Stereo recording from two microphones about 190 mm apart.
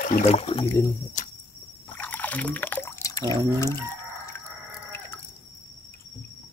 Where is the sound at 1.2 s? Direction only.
40° left (ahead or behind).